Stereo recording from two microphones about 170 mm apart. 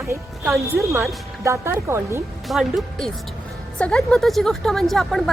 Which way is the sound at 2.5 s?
Centre (ahead or behind).